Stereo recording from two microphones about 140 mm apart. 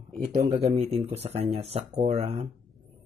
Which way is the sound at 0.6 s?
50° right (ahead or behind).